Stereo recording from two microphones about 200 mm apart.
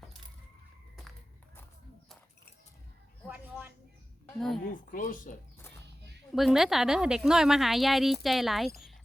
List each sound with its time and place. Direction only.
3.2 s a sound: 10° right (ahead or behind)
4.4 s a woman's voice: centre (ahead or behind)
4.7 s speech: 45° left (ahead or behind)
6.3 s a woman's voice: centre (ahead or behind)